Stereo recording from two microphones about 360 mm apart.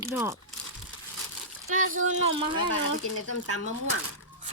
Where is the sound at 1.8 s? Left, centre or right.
Right.